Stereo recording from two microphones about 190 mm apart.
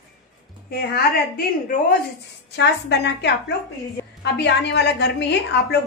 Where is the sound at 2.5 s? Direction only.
65° left (ahead or behind).